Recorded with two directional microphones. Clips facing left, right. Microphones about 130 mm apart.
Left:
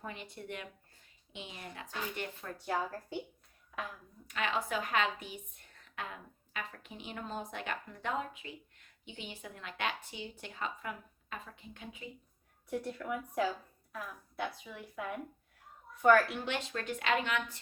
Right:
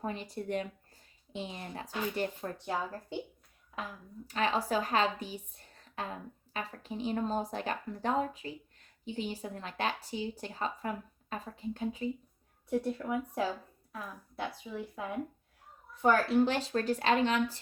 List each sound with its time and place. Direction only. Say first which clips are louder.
0.0 s a woman's voice: right 7 dB; 35° right (ahead or behind)
4.3 s a woman's voice: right 4 dB; 35° right (ahead or behind)
14.6 s a woman's voice: right 3 dB; 30° right (ahead or behind)